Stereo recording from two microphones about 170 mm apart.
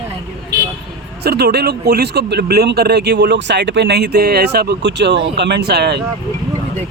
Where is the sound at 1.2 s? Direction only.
70° right (ahead or behind).